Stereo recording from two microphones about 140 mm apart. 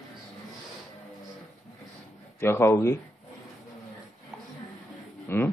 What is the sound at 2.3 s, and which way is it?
Speech, 15° left (ahead or behind).